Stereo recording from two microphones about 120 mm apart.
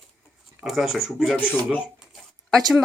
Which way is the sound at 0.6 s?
5° right (ahead or behind).